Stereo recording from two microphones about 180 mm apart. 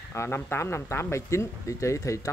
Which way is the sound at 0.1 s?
15° left (ahead or behind).